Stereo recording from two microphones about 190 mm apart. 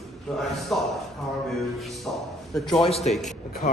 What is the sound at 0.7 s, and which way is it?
Speech, centre (ahead or behind).